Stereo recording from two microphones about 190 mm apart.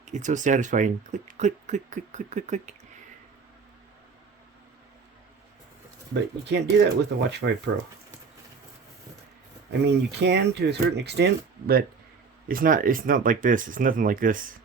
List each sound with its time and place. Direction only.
0.0 s speech: 40° right (ahead or behind)
6.5 s speech: 65° right (ahead or behind)
9.8 s speech: 65° right (ahead or behind)
12.5 s speech: 45° right (ahead or behind)